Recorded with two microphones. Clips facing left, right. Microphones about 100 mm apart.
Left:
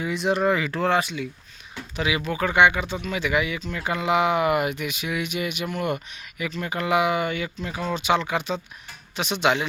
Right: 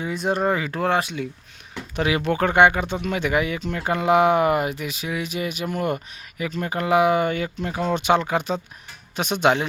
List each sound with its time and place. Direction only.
0.0 s speech: 40° right (ahead or behind)